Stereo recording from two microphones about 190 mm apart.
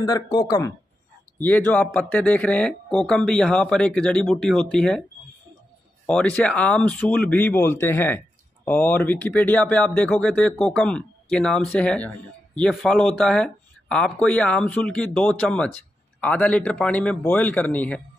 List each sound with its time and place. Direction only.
0.0 s speech: 20° left (ahead or behind); by 5.0 s 5° left (ahead or behind)
6.0 s speech: 5° left (ahead or behind)